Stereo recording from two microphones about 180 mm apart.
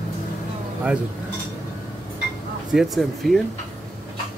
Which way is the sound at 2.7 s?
Centre (ahead or behind).